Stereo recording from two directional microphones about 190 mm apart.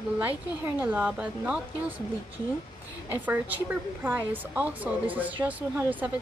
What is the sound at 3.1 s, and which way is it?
Speech, 10° right (ahead or behind).